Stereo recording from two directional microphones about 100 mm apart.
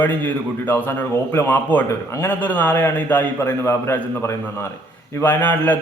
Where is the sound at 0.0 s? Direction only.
20° left (ahead or behind).